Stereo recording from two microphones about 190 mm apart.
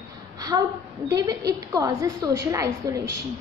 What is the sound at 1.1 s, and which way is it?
A woman's voice, 20° right (ahead or behind).